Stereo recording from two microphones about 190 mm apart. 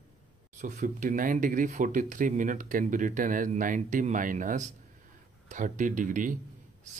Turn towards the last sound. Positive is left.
turn(degrees=-45)  # may be behind; listen again after turning